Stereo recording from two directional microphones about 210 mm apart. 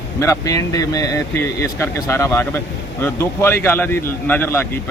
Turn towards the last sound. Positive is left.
turn(degrees=10)  # may be behind; listen again after turning